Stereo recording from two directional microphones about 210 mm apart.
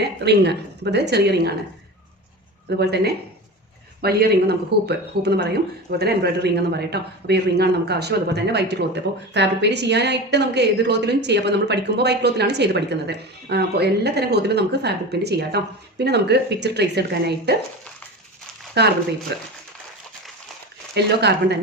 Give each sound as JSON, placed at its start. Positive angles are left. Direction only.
{"t": 0.0, "sound": "speech", "side_deg": -50}
{"t": 2.6, "sound": "speech", "side_deg": -50}
{"t": 18.8, "sound": "speech", "side_deg": -50}
{"t": 20.9, "sound": "speech", "side_deg": -50}